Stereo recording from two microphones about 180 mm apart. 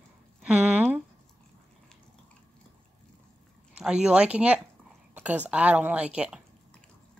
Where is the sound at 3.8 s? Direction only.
5° right (ahead or behind).